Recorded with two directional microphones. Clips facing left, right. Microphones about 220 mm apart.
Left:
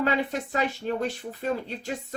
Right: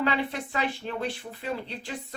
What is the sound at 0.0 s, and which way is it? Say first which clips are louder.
A woman's voice: left 2 dB; 45° left (ahead or behind).